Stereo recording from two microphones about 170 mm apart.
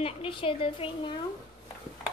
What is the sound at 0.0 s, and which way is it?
A woman's voice, 30° left (ahead or behind).